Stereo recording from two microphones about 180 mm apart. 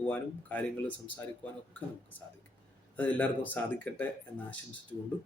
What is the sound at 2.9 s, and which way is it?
Speech, 10° left (ahead or behind).